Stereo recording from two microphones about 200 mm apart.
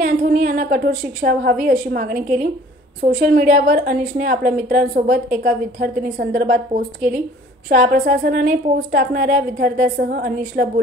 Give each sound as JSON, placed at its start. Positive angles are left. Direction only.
{"t": 0.0, "sound": "a woman's voice", "side_deg": -45}